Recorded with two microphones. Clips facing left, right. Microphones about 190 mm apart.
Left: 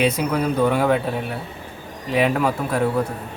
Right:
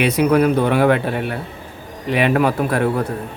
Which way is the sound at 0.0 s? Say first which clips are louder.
Right 5 dB; 70° right (ahead or behind).